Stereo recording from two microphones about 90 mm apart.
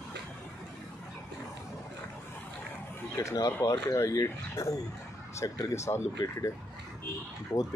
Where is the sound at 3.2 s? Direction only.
35° left (ahead or behind).